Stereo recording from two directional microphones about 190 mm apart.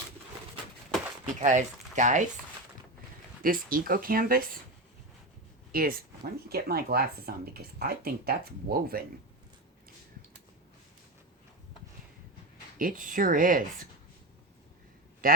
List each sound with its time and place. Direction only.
1.2 s speech: 40° right (ahead or behind)
3.4 s speech: 50° right (ahead or behind)
5.7 s speech: 50° right (ahead or behind)
12.7 s speech: 45° right (ahead or behind)
15.2 s a man's voice: 50° right (ahead or behind)